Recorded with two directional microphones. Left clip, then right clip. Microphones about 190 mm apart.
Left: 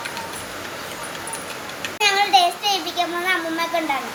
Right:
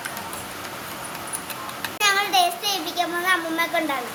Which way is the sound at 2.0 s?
15° right (ahead or behind).